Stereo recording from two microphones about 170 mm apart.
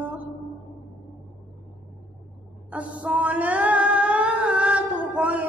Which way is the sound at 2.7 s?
10° right (ahead or behind).